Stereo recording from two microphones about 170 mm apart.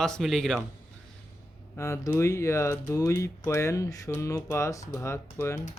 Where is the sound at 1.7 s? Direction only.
15° left (ahead or behind).